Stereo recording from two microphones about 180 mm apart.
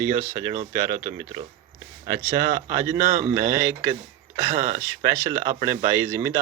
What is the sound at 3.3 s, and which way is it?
Speech, 15° right (ahead or behind).